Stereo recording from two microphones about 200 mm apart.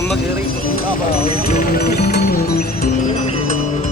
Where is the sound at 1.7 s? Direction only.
50° left (ahead or behind).